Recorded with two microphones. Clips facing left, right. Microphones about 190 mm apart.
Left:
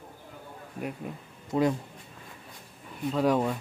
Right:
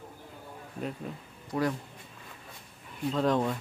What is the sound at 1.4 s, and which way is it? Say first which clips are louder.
Speech: left 4 dB; 20° left (ahead or behind).